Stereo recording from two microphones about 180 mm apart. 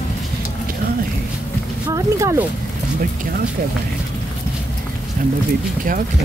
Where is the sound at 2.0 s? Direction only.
15° right (ahead or behind).